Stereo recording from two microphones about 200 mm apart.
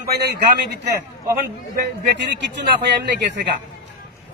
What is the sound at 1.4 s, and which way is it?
A man's voice, 50° right (ahead or behind).